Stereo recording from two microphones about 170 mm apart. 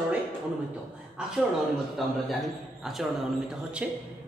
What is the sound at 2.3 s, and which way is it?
A man's voice, centre (ahead or behind).